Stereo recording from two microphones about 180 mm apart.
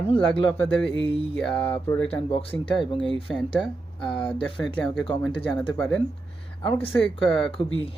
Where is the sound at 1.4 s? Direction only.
5° left (ahead or behind).